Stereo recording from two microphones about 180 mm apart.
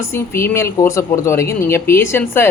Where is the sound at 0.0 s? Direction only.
15° left (ahead or behind).